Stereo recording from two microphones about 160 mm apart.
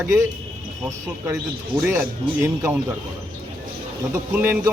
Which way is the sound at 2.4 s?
15° right (ahead or behind).